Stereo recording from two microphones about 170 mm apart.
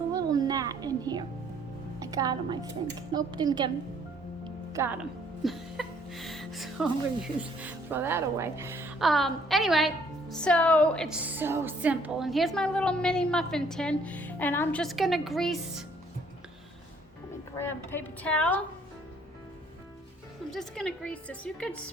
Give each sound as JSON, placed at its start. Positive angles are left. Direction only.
{"t": 0.1, "sound": "music", "side_deg": -20}
{"t": 2.0, "sound": "a woman's voice", "side_deg": -20}
{"t": 4.7, "sound": "speech", "side_deg": -15}
{"t": 9.0, "sound": "a woman's voice", "side_deg": 0}
{"t": 17.6, "sound": "a woman's voice", "side_deg": 10}
{"t": 20.5, "sound": "a woman's voice", "side_deg": 0}